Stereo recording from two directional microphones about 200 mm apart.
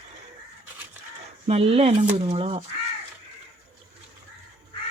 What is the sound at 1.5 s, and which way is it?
Speech, 30° right (ahead or behind).